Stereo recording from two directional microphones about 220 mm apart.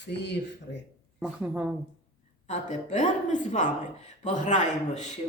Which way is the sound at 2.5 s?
35° left (ahead or behind).